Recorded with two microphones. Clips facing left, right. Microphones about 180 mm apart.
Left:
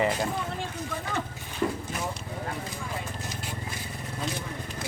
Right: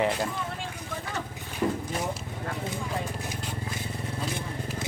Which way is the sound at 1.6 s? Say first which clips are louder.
Right 1 dB; 30° right (ahead or behind).